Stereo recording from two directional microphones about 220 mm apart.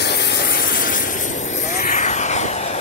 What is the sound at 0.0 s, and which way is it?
Vehicle, 50° left (ahead or behind).